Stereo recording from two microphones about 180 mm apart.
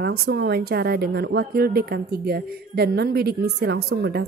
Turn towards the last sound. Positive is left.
turn(degrees=-60)  # may be behind; listen again after turning